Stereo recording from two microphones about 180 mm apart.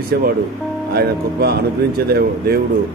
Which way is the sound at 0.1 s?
60° right (ahead or behind).